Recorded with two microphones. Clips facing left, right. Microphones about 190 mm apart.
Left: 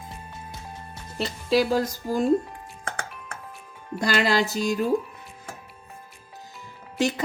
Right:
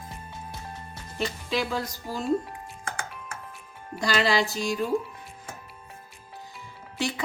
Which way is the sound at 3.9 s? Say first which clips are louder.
Left 2 dB; 50° left (ahead or behind).